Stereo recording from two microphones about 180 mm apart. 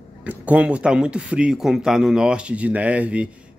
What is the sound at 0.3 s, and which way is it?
Speech, 5° right (ahead or behind).